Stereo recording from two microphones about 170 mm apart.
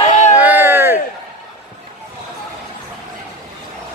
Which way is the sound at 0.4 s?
10° right (ahead or behind).